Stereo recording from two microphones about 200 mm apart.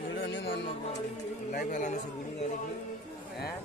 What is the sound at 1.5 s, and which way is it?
Speech, 40° left (ahead or behind).